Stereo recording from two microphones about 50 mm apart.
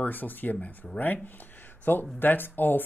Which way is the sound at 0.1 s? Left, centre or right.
Left.